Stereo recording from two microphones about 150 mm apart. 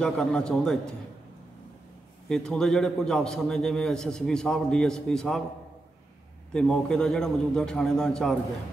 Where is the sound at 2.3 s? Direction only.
5° left (ahead or behind).